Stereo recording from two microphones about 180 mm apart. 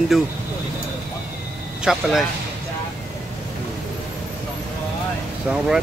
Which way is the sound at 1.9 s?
Centre (ahead or behind).